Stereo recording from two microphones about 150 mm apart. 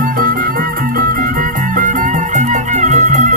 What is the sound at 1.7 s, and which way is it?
Music, 60° right (ahead or behind).